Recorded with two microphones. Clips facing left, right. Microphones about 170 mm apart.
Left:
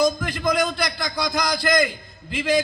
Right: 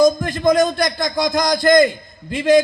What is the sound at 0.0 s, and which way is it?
A man's voice, 45° right (ahead or behind).